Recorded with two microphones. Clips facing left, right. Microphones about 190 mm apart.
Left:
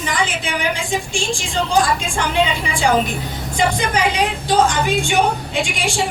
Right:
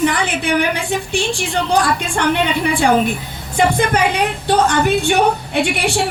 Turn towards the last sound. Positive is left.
turn(degrees=-65)  # may be behind; listen again after turning